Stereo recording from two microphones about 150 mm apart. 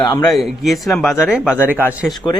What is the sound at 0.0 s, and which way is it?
Speech, 25° left (ahead or behind).